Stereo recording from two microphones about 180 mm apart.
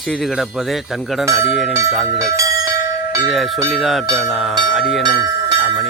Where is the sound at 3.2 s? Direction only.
Centre (ahead or behind).